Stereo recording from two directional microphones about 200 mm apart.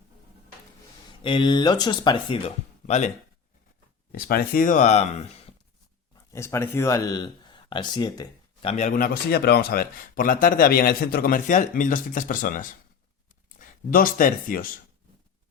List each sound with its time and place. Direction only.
1.2 s speech: 25° left (ahead or behind)
4.1 s speech: 50° left (ahead or behind)
6.1 s speech: 15° left (ahead or behind)
8.7 s speech: 40° left (ahead or behind)